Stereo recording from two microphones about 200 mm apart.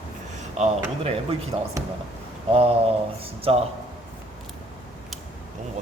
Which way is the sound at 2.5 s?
30° right (ahead or behind).